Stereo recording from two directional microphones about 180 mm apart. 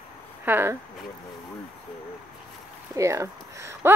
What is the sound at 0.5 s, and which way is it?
Speech, 10° right (ahead or behind).